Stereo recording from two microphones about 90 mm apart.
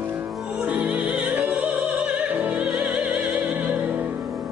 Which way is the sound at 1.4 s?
15° right (ahead or behind).